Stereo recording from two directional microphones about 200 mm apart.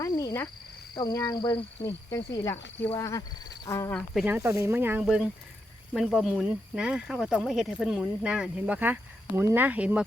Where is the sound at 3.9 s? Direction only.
Centre (ahead or behind).